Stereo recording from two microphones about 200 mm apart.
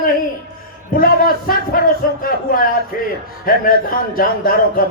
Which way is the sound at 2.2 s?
45° left (ahead or behind).